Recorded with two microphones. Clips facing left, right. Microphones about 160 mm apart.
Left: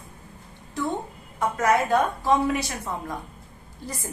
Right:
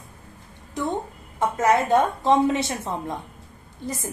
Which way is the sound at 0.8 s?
20° right (ahead or behind).